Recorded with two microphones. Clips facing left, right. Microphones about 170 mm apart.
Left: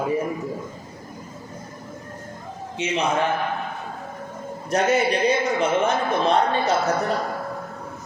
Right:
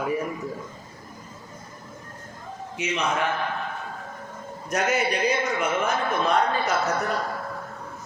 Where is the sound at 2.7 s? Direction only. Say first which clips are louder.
Left 4 dB; 30° left (ahead or behind).